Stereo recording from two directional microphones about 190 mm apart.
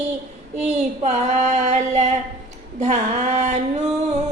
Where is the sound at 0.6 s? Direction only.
35° right (ahead or behind).